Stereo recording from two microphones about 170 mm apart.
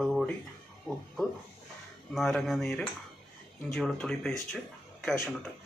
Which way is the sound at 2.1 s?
Centre (ahead or behind).